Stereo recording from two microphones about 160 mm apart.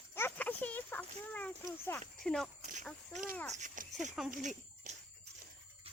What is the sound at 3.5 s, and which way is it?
Speech, 55° right (ahead or behind).